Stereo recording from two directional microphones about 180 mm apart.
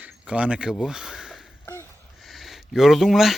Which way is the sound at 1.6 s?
15° left (ahead or behind).